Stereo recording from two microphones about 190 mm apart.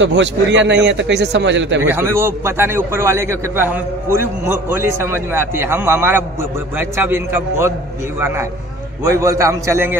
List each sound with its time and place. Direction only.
0.0 s a man's voice: 70° right (ahead or behind)
1.9 s a man's voice: 15° right (ahead or behind)
9.0 s a man's voice: 15° right (ahead or behind)